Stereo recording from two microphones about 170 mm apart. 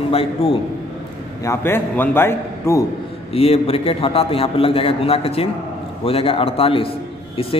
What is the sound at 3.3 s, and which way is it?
A man's voice, 35° left (ahead or behind).